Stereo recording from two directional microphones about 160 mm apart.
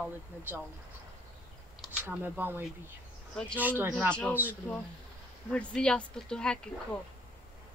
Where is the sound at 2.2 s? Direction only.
10° right (ahead or behind).